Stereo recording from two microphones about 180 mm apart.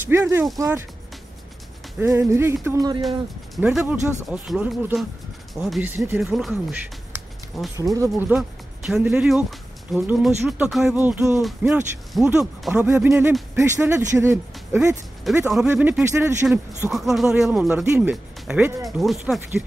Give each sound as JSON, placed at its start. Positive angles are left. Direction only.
{"t": 0.1, "sound": "speech", "side_deg": -15}
{"t": 2.0, "sound": "speech", "side_deg": -15}
{"t": 3.0, "sound": "speech", "side_deg": 0}
{"t": 6.1, "sound": "speech", "side_deg": 0}
{"t": 7.7, "sound": "speech", "side_deg": -20}
{"t": 11.4, "sound": "speech", "side_deg": 0}
{"t": 16.9, "sound": "speech", "side_deg": 0}